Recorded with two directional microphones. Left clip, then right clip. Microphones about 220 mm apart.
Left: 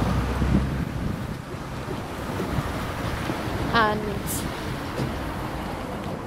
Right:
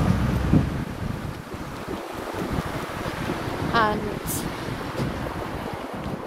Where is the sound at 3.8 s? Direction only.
10° right (ahead or behind).